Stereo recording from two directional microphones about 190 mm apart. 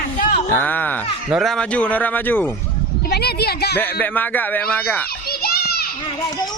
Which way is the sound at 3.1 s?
55° left (ahead or behind).